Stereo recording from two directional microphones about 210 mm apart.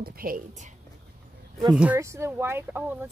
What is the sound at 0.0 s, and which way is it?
Speech, 45° right (ahead or behind).